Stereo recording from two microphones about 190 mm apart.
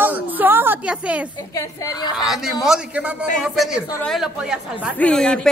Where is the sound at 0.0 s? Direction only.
10° right (ahead or behind).